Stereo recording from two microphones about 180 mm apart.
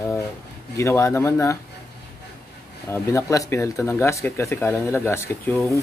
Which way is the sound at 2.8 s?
15° left (ahead or behind).